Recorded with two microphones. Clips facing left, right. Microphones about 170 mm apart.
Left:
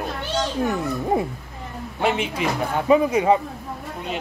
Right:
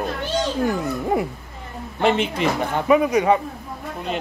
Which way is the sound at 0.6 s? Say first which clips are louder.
Right 1 dB; 25° left (ahead or behind).